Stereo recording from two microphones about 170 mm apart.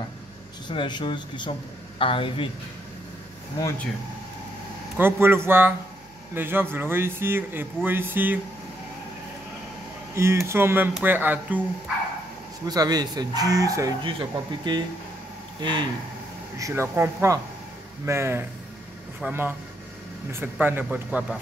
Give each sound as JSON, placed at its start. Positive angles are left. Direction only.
{"t": 0.7, "sound": "speech", "side_deg": 25}
{"t": 4.9, "sound": "a man's voice", "side_deg": -15}
{"t": 10.1, "sound": "a man's voice", "side_deg": -15}
{"t": 12.6, "sound": "speech", "side_deg": -25}
{"t": 16.5, "sound": "a man's voice", "side_deg": -15}